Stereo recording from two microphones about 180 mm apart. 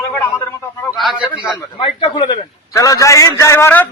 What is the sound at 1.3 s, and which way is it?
A man's voice, 25° left (ahead or behind).